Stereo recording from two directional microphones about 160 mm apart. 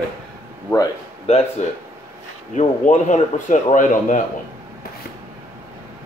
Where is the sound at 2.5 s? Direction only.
45° left (ahead or behind).